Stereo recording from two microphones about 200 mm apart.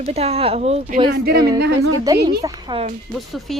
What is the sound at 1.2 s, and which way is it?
Speech, 55° right (ahead or behind).